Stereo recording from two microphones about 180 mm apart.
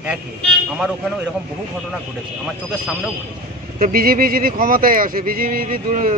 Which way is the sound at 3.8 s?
55° right (ahead or behind).